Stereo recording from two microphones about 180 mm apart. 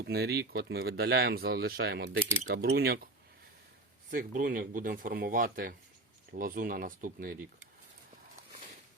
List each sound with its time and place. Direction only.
0.0 s speech: 60° right (ahead or behind)
4.1 s speech: 50° right (ahead or behind)